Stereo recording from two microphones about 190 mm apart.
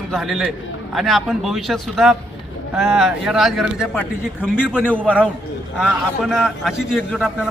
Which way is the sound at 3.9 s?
10° left (ahead or behind).